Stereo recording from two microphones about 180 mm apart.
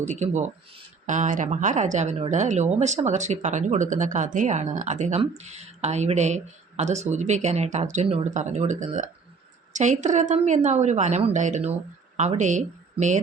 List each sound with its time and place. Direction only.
0.0 s speech: 40° right (ahead or behind)